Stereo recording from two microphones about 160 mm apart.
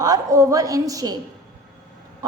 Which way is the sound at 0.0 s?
20° right (ahead or behind).